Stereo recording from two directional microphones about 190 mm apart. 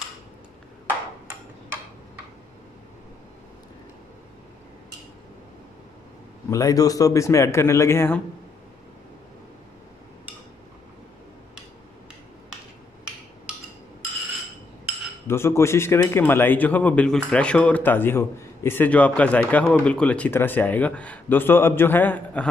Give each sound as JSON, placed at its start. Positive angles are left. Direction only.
{"t": 6.5, "sound": "a man's voice", "side_deg": 20}
{"t": 13.5, "sound": "a sound", "side_deg": -5}
{"t": 15.2, "sound": "a man's voice", "side_deg": 15}